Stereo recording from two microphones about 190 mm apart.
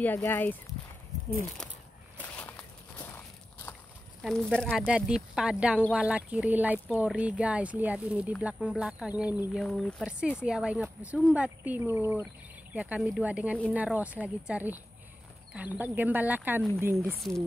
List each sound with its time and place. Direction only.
0.0 s speech: 10° left (ahead or behind)
1.6 s a sound: 5° left (ahead or behind)
4.2 s speech: 5° left (ahead or behind); by 17.0 s 10° right (ahead or behind)